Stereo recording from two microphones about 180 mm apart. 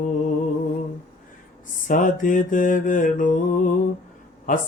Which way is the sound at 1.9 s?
45° left (ahead or behind).